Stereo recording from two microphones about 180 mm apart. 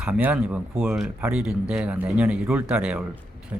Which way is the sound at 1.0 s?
15° right (ahead or behind).